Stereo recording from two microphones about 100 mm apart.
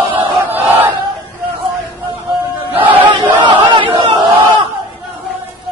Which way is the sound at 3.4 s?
55° right (ahead or behind).